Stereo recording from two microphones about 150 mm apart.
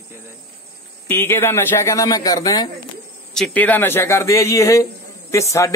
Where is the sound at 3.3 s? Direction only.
5° left (ahead or behind).